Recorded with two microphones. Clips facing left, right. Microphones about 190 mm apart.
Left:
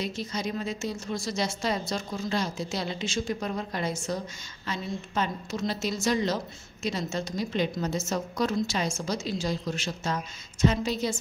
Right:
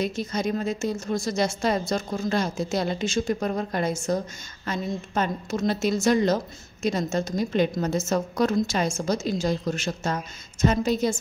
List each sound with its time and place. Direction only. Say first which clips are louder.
0.0 s a woman's voice: right 5 dB; 50° right (ahead or behind)